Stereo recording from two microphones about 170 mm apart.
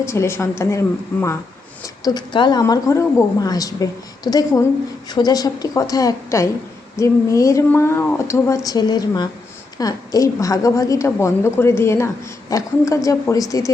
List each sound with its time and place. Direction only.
0.0 s a woman's voice: 15° left (ahead or behind)